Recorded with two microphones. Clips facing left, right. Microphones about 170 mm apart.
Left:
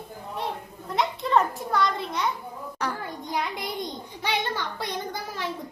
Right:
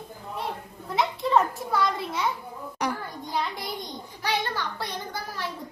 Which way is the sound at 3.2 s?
20° left (ahead or behind).